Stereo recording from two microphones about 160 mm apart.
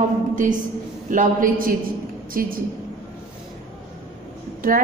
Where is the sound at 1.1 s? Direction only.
55° right (ahead or behind).